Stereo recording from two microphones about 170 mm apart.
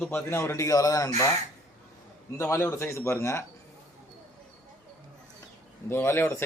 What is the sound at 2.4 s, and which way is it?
Speech, 15° left (ahead or behind).